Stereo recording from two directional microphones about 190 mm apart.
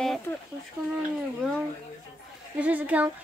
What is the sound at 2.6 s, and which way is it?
Speech, 10° right (ahead or behind).